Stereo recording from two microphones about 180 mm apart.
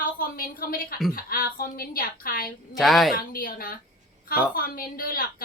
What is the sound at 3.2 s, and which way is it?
A woman's voice, 55° left (ahead or behind).